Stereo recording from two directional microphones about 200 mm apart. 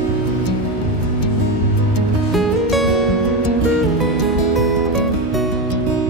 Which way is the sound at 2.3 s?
Centre (ahead or behind).